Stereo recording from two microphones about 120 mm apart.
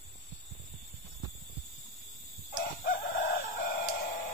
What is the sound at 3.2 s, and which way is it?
Chicken, 90° left.